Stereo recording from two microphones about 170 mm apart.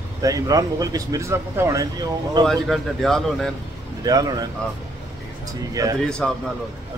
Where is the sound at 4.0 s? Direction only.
20° right (ahead or behind).